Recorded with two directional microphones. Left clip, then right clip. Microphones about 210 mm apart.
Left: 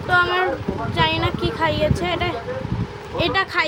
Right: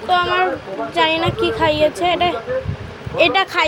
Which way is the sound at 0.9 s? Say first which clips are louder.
Right 4 dB; 15° right (ahead or behind).